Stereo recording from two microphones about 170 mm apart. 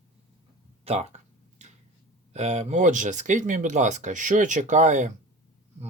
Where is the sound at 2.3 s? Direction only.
40° right (ahead or behind).